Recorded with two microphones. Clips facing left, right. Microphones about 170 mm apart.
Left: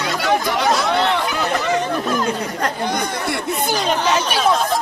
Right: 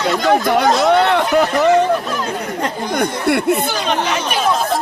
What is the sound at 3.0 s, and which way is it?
Speech, 60° right (ahead or behind).